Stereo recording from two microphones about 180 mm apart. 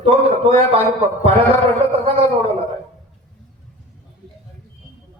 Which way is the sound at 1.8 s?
30° right (ahead or behind).